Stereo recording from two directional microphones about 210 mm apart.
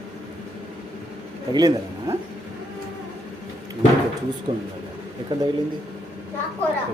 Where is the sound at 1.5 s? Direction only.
20° right (ahead or behind).